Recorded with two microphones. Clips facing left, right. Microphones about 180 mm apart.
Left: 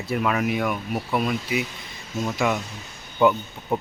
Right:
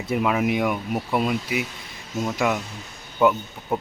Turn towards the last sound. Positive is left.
turn(degrees=-5)  # may be behind; listen again after turning